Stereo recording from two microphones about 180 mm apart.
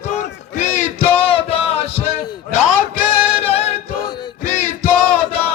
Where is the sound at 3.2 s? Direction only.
30° left (ahead or behind).